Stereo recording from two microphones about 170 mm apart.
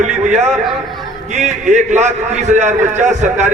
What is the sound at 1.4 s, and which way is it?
A man's voice, 45° right (ahead or behind).